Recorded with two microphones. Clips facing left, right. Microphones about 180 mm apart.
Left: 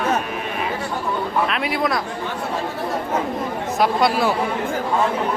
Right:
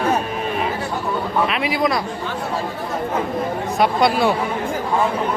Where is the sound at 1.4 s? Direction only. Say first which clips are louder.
Right 2 dB; centre (ahead or behind).